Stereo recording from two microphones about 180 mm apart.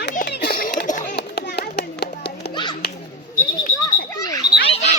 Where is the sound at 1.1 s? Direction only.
60° left (ahead or behind).